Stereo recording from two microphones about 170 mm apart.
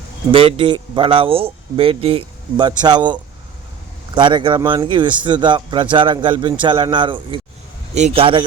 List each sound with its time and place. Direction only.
0.3 s speech: 30° right (ahead or behind)